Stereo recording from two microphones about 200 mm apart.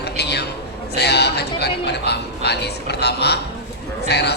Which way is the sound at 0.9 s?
55° left (ahead or behind).